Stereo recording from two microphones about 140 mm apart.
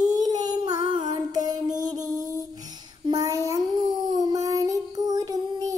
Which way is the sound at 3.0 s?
25° right (ahead or behind).